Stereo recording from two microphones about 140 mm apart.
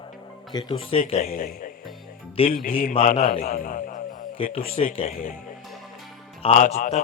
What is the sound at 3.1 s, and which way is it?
Speech, 45° left (ahead or behind).